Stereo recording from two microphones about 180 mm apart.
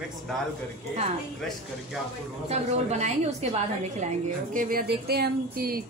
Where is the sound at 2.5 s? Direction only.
40° right (ahead or behind).